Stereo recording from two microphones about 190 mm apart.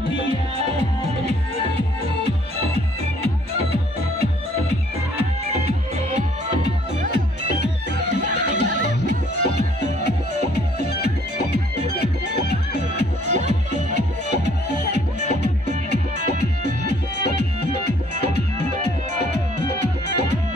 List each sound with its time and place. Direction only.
5.5 s music: 35° right (ahead or behind)
7.1 s music: 60° left (ahead or behind)